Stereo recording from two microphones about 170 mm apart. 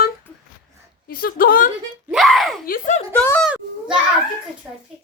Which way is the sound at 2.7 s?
45° left (ahead or behind).